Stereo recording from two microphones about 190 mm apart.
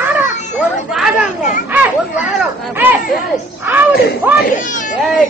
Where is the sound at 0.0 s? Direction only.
10° right (ahead or behind).